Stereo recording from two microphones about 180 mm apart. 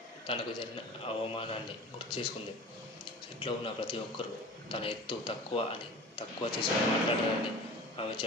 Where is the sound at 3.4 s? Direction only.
30° left (ahead or behind).